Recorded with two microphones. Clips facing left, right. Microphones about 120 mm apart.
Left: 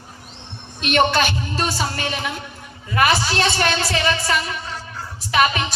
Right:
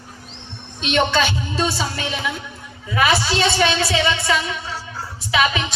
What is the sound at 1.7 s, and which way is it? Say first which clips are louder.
Music: left 1 dB; 55° left (ahead or behind).